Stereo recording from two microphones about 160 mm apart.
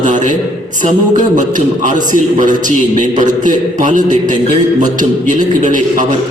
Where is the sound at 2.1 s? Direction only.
55° right (ahead or behind).